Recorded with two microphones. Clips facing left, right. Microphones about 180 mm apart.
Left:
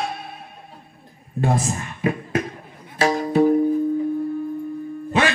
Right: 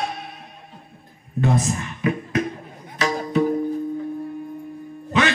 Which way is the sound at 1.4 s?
30° left (ahead or behind).